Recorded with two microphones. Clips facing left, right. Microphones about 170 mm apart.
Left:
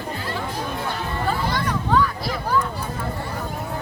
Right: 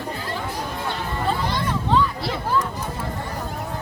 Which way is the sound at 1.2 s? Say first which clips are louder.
Even; 25° right (ahead or behind).